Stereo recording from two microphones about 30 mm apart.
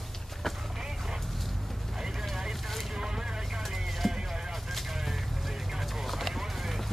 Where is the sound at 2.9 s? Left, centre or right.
Right.